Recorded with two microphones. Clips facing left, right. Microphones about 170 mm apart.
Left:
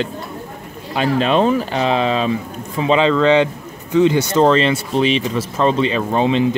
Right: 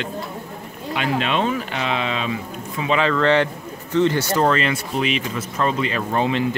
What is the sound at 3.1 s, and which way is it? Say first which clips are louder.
A man's voice: left 4 dB; 15° left (ahead or behind).